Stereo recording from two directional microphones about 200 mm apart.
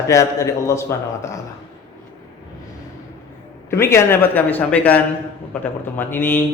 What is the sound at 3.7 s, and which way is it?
A man's voice, 15° left (ahead or behind).